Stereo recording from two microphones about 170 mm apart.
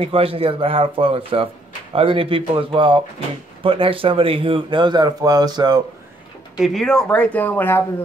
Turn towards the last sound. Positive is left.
turn(degrees=10)  # may be behind; listen again after turning